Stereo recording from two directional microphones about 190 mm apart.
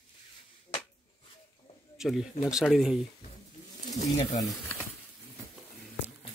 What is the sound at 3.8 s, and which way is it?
Pigeon, 35° left (ahead or behind).